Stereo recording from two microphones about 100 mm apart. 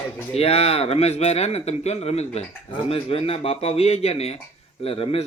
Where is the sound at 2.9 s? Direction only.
75° left (ahead or behind).